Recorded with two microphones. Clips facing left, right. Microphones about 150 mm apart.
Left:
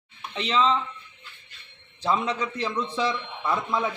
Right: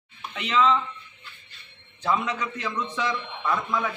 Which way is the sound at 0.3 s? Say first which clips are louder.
Right 1 dB; 30° left (ahead or behind).